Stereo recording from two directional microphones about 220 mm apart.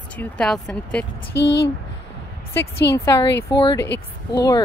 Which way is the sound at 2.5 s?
10° left (ahead or behind).